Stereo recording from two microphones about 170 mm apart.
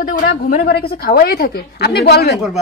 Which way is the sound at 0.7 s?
65° left (ahead or behind).